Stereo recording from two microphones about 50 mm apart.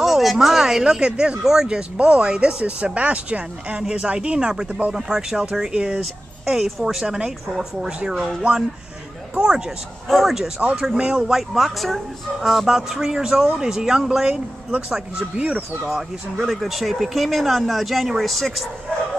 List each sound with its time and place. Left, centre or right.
0.0 s speech: centre
6.4 s speech: centre
8.4 s speech: centre
10.0 s speech: centre
10.8 s speech: centre
11.3 s speech: centre